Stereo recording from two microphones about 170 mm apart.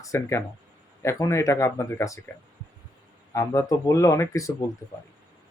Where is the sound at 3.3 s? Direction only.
20° left (ahead or behind).